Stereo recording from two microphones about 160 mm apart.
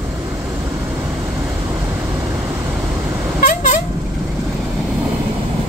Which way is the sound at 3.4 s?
50° left (ahead or behind).